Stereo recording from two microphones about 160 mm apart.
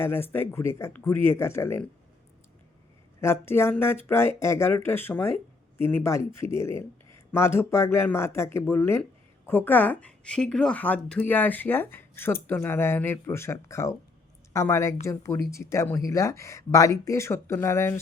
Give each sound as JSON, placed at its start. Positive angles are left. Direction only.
{"t": 0.0, "sound": "speech", "side_deg": 15}
{"t": 3.2, "sound": "speech", "side_deg": 15}